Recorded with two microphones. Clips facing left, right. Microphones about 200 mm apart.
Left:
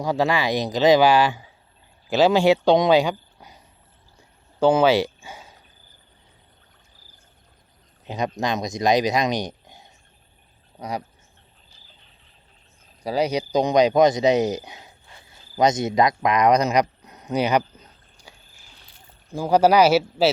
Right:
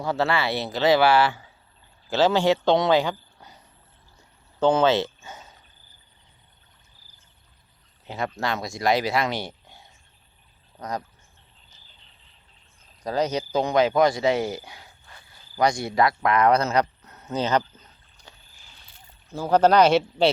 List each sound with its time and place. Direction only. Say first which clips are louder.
0.0 s speech: left 3 dB; 15° left (ahead or behind)
4.6 s speech: left 3 dB; 10° left (ahead or behind)
8.0 s speech: left 3 dB; 20° left (ahead or behind)
13.0 s speech: left 2 dB; 10° left (ahead or behind)